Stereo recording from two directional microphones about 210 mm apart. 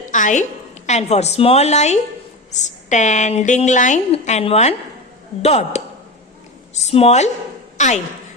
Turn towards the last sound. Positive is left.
turn(degrees=35)  # may be behind; listen again after turning